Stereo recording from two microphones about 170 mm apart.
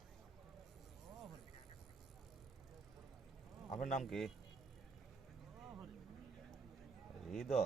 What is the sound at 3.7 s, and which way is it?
Speech, 45° left (ahead or behind).